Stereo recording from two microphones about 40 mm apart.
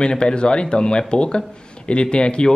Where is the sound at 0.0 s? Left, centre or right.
Left.